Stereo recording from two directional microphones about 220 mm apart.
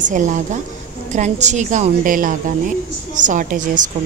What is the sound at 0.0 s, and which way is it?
Speech, 35° right (ahead or behind).